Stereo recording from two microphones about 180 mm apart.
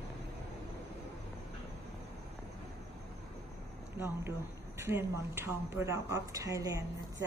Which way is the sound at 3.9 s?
15° right (ahead or behind).